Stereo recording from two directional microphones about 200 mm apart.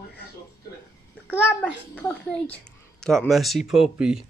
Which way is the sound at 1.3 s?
10° left (ahead or behind).